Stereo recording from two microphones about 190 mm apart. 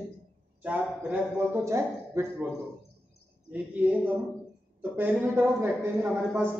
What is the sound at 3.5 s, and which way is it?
Speech, 5° right (ahead or behind).